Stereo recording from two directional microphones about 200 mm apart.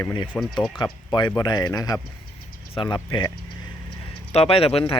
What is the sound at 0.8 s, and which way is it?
Speech, 20° left (ahead or behind).